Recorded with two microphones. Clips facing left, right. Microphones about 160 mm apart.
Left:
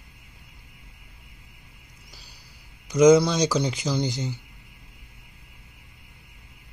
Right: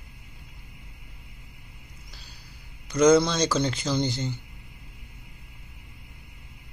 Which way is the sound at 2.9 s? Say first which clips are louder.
Left 3 dB; 15° left (ahead or behind).